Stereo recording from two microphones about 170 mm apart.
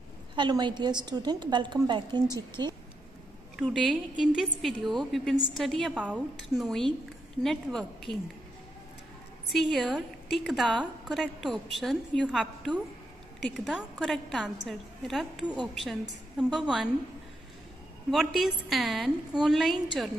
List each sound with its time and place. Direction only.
0.4 s a woman's voice: 25° right (ahead or behind)
3.7 s a woman's voice: centre (ahead or behind)
9.5 s a woman's voice: centre (ahead or behind)
18.1 s a woman's voice: centre (ahead or behind)